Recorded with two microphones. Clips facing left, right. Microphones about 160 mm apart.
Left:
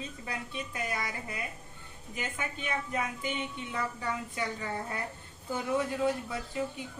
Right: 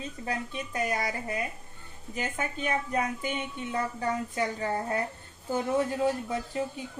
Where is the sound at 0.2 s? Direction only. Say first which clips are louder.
Right 7 dB; 40° right (ahead or behind).